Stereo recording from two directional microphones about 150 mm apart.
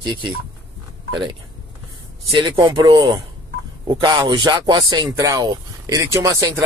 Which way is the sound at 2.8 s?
30° right (ahead or behind).